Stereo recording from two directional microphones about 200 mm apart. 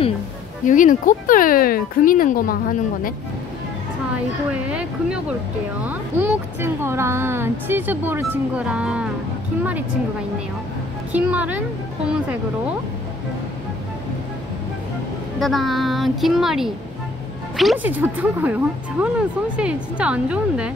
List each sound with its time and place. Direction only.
0.7 s speech: 40° left (ahead or behind)
4.6 s speech: 5° right (ahead or behind)
11.1 s speech: 5° right (ahead or behind)
15.3 s speech: centre (ahead or behind)